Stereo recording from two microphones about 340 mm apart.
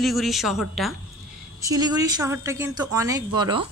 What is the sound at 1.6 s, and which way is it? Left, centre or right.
A woman's voice, centre.